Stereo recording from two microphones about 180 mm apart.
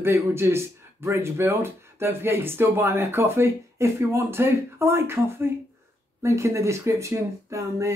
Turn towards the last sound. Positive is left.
turn(degrees=-15)  # may be behind; listen again after turning